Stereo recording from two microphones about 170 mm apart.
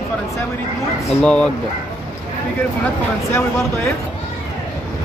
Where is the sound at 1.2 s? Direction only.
5° left (ahead or behind).